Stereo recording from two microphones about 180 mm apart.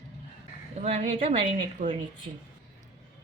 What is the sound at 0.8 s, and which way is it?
Speech, 35° right (ahead or behind).